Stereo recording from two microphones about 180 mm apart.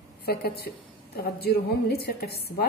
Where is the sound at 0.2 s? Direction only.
60° left (ahead or behind).